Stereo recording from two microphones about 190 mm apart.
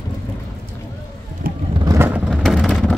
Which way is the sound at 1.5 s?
50° right (ahead or behind).